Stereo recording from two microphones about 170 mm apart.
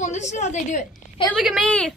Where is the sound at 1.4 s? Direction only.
Centre (ahead or behind).